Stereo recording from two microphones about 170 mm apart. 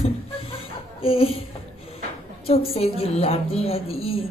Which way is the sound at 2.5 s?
35° left (ahead or behind).